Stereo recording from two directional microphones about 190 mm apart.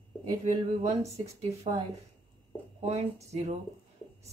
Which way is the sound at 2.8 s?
35° right (ahead or behind).